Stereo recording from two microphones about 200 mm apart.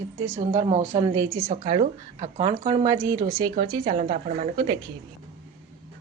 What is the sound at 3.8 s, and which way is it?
Speech, 35° right (ahead or behind).